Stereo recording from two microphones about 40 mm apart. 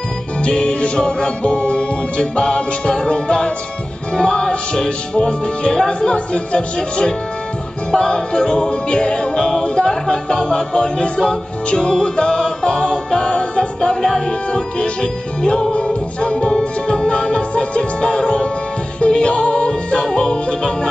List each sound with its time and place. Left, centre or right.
0.4 s music: left